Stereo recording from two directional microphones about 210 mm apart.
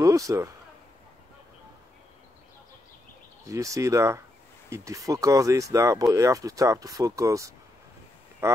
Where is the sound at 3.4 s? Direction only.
15° right (ahead or behind).